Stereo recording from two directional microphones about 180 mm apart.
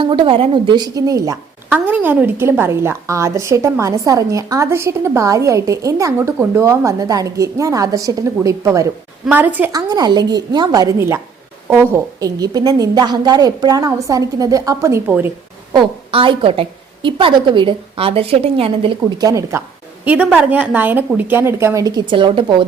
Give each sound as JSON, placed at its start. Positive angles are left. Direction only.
{"t": 0.0, "sound": "a woman's voice", "side_deg": -30}
{"t": 9.9, "sound": "a woman's voice", "side_deg": -20}
{"t": 15.7, "sound": "a woman's voice", "side_deg": -25}
{"t": 19.3, "sound": "a woman's voice", "side_deg": -15}
{"t": 20.1, "sound": "a woman's voice", "side_deg": -5}